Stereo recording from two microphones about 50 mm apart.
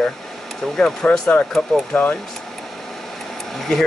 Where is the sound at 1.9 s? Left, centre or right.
Left.